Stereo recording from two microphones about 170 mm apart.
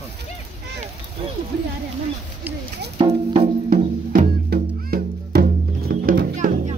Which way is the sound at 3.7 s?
55° right (ahead or behind).